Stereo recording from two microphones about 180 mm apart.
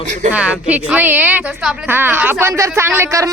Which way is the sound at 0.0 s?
45° right (ahead or behind).